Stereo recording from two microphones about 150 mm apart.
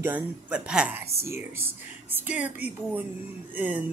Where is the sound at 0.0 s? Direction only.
10° right (ahead or behind).